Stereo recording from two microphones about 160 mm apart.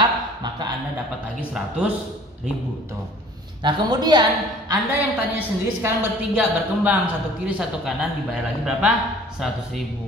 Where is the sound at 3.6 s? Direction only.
25° right (ahead or behind).